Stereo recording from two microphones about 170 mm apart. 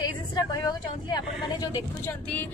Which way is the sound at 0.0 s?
25° left (ahead or behind).